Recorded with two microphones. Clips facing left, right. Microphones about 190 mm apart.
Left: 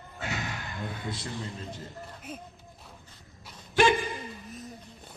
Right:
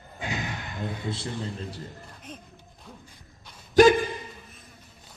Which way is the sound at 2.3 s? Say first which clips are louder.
Left 1 dB; 5° left (ahead or behind).